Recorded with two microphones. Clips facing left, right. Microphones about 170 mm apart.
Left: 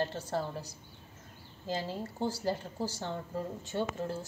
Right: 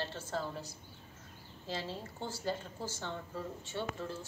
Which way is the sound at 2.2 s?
40° left (ahead or behind).